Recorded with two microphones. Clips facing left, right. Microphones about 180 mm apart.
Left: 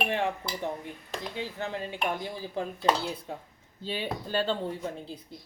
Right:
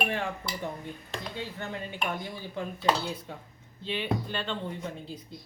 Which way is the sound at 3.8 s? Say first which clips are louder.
Right 2 dB; 40° left (ahead or behind).